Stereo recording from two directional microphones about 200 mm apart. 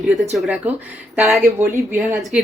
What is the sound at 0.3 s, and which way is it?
Speech, centre (ahead or behind).